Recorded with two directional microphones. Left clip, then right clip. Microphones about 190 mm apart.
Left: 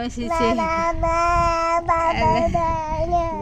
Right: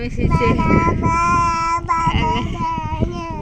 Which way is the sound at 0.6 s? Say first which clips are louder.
Right 3 dB; 5° left (ahead or behind).